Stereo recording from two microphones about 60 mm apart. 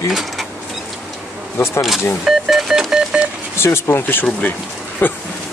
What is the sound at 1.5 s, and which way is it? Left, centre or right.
Speech, left.